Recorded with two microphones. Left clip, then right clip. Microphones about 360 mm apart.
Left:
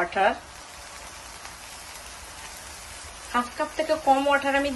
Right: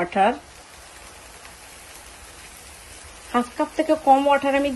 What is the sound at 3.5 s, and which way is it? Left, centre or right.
Speech, centre.